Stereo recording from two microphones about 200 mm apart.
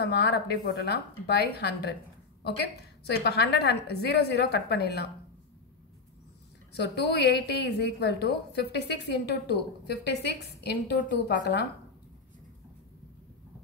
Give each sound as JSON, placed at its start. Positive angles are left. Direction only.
{"t": 0.0, "sound": "a woman's voice", "side_deg": 55}
{"t": 6.7, "sound": "a woman's voice", "side_deg": 55}